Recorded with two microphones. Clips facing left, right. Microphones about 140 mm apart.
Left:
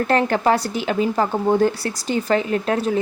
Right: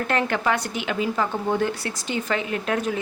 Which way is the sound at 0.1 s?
35° left (ahead or behind).